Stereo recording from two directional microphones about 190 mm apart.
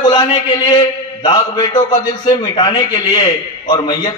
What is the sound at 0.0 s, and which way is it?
A man's voice, 25° left (ahead or behind).